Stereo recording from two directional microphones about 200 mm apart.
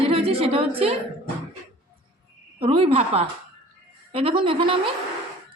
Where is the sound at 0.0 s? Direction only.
30° right (ahead or behind).